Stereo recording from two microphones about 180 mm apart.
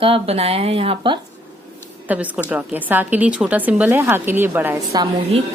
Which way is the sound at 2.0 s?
10° right (ahead or behind).